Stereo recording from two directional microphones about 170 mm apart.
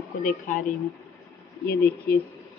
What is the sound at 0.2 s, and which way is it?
Speech, 50° left (ahead or behind).